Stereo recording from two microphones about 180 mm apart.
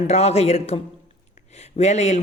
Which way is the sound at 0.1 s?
35° left (ahead or behind).